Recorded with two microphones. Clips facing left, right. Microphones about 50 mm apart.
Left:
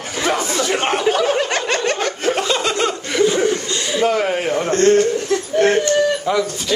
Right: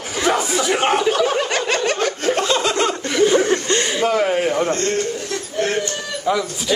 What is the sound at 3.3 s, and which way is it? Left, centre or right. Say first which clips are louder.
Chuckle: right 2 dB; right.